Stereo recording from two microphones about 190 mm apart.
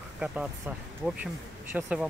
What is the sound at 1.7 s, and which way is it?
Speech, 5° right (ahead or behind).